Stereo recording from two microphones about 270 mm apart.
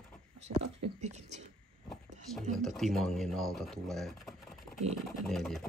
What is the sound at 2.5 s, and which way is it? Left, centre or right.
Speech, centre.